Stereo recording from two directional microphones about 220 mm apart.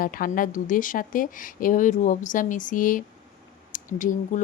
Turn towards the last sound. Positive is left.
turn(degrees=35)  # may be behind; listen again after turning